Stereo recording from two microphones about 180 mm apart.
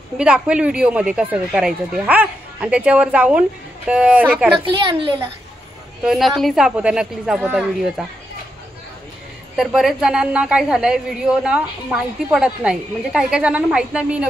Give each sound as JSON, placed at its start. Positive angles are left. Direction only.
{"t": 0.2, "sound": "speech", "side_deg": -5}
{"t": 4.6, "sound": "a woman's voice", "side_deg": -30}
{"t": 6.0, "sound": "a woman's voice", "side_deg": 0}
{"t": 9.6, "sound": "a woman's voice", "side_deg": 0}